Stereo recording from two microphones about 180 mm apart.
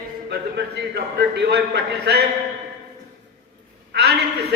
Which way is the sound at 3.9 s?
65° right (ahead or behind).